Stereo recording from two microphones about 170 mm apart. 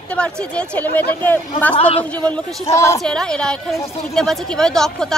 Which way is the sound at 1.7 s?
35° left (ahead or behind).